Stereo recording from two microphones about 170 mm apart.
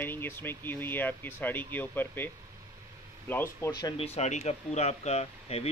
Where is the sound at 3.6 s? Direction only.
25° left (ahead or behind).